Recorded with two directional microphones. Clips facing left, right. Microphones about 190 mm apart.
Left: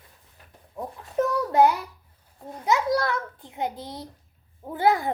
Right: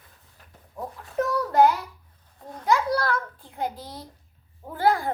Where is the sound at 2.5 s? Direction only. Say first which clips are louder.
Even; 20° left (ahead or behind).